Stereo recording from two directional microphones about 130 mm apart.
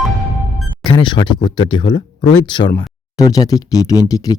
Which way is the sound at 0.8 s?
35° left (ahead or behind).